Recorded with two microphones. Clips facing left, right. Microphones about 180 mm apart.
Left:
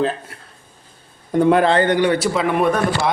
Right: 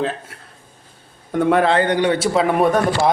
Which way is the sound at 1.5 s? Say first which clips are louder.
Left 1 dB; 5° right (ahead or behind).